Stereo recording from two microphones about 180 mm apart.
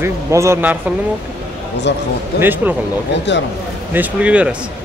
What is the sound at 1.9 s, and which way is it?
Speech, 75° left (ahead or behind).